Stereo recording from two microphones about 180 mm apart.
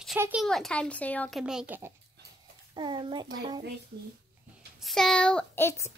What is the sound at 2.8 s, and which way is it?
Speech, 25° right (ahead or behind).